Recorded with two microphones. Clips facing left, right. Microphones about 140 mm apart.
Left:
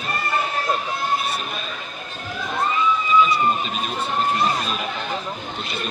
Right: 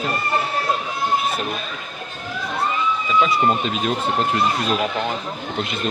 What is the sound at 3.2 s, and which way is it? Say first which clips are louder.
Speech: right 2 dB; 90° right.